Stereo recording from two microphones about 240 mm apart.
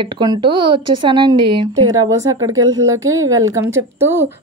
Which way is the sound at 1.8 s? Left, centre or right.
Centre.